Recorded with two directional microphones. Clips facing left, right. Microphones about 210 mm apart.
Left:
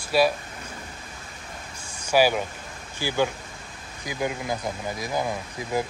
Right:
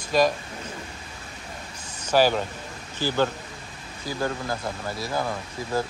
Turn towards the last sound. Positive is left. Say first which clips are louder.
# even
turn(degrees=15)  # may be behind; listen again after turning